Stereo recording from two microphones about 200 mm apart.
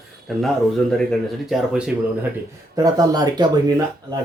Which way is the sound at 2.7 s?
20° right (ahead or behind).